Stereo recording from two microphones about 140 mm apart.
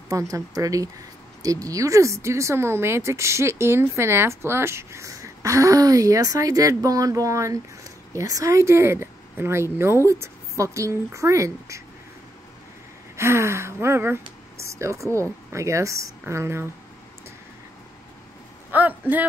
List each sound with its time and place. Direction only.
0.1 s speech: 25° right (ahead or behind)
13.1 s speech: 20° right (ahead or behind)
18.7 s a sound: 10° right (ahead or behind)